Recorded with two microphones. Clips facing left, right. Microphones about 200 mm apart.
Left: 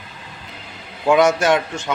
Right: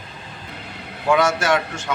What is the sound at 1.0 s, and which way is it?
Speech, 15° left (ahead or behind).